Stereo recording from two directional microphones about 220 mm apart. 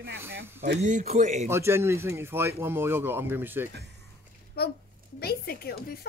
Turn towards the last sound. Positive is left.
turn(degrees=45)  # may be behind; listen again after turning